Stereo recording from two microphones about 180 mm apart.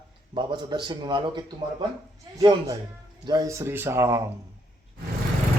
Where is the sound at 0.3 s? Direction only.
25° right (ahead or behind).